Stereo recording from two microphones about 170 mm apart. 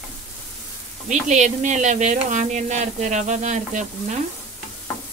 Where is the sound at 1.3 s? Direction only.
45° right (ahead or behind).